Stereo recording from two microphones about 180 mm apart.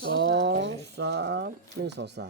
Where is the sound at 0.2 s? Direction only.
70° right (ahead or behind).